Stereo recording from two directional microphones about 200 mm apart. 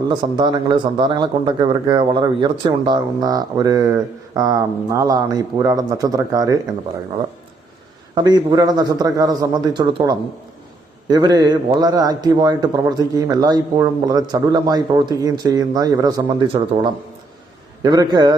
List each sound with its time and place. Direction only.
0.1 s a man's voice: 20° right (ahead or behind)
8.1 s a man's voice: 20° right (ahead or behind)